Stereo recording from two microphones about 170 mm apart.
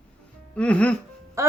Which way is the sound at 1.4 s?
20° right (ahead or behind).